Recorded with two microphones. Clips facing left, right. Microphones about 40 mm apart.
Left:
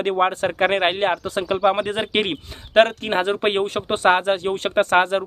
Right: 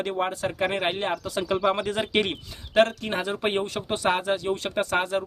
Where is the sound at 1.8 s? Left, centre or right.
Left.